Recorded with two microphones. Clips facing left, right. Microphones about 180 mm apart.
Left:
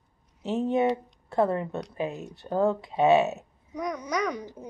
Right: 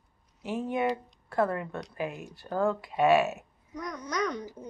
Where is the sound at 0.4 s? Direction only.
25° left (ahead or behind).